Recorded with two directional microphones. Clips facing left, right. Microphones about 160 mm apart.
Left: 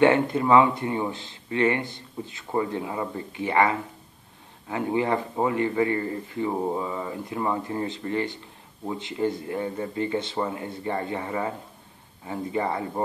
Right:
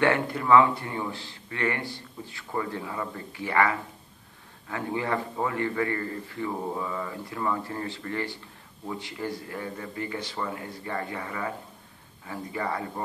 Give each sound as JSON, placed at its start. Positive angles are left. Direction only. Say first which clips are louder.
{"t": 0.0, "sound": "a man's voice", "louder": "left 5 dB", "side_deg": 20}